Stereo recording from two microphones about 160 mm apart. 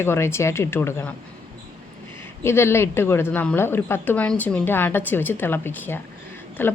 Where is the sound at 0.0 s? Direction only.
15° left (ahead or behind).